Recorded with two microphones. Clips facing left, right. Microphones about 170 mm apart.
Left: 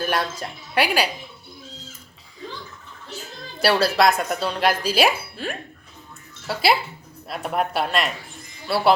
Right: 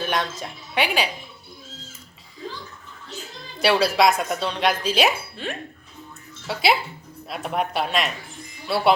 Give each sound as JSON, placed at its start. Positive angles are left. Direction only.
{"t": 0.0, "sound": "speech", "side_deg": 5}
{"t": 3.6, "sound": "speech", "side_deg": 0}